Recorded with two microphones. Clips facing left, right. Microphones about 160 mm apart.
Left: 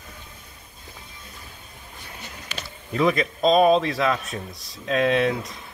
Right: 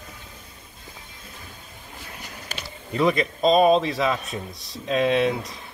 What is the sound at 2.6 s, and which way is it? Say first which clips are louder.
Speech: even; centre (ahead or behind).